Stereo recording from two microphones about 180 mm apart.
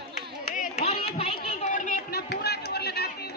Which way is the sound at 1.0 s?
35° left (ahead or behind).